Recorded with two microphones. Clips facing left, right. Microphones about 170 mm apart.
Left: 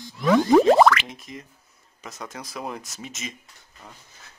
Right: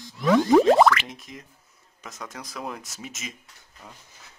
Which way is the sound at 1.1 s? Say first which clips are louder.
Left 2 dB; centre (ahead or behind).